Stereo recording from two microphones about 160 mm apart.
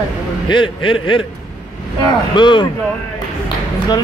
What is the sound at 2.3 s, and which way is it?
Speech, 30° left (ahead or behind).